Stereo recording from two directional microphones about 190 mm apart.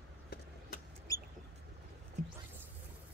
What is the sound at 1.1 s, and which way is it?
Mouse, 20° left (ahead or behind).